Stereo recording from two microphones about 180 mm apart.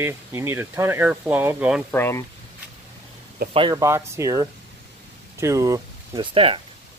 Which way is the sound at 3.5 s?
25° right (ahead or behind).